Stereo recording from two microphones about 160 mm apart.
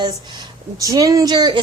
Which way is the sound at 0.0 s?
25° right (ahead or behind).